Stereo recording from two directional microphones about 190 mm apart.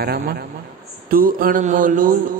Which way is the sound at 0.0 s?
55° right (ahead or behind).